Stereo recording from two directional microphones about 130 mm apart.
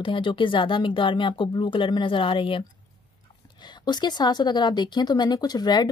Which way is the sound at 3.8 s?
35° left (ahead or behind).